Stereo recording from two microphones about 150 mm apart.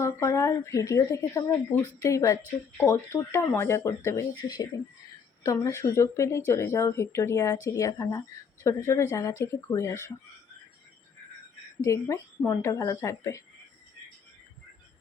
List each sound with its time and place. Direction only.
0.0 s speech: 20° left (ahead or behind)
11.8 s speech: 20° left (ahead or behind)